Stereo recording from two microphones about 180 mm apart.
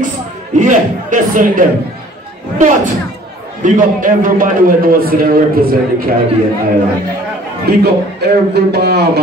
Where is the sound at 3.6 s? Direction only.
45° right (ahead or behind).